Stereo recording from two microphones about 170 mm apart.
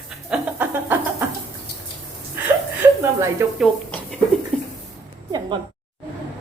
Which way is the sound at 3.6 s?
Centre (ahead or behind).